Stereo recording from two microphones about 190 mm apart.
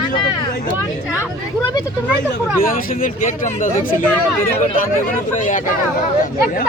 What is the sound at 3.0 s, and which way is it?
Speech, 40° left (ahead or behind).